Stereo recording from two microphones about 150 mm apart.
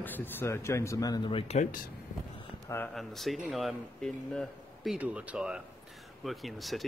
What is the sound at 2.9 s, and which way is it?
Speech, centre (ahead or behind).